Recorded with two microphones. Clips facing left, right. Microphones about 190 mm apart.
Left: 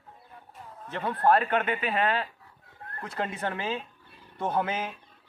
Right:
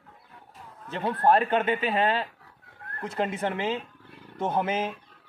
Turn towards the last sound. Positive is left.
turn(degrees=-20)  # may be behind; listen again after turning